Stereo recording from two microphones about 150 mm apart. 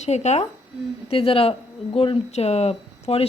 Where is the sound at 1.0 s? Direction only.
35° left (ahead or behind).